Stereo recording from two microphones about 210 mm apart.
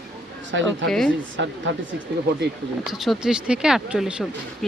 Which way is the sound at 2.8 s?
Centre (ahead or behind).